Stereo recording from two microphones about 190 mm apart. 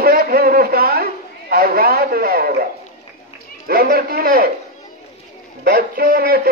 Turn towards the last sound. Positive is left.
turn(degrees=-50)  # may be behind; listen again after turning